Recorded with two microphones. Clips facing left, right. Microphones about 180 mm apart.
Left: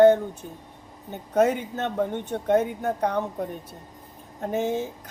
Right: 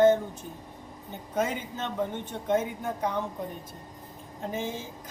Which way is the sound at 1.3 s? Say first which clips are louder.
Left 8 dB; 65° left (ahead or behind).